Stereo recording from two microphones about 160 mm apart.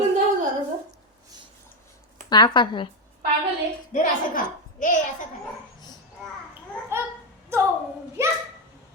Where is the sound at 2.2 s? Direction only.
25° left (ahead or behind).